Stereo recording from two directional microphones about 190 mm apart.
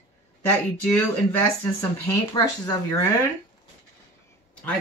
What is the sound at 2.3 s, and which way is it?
Speech, 20° left (ahead or behind).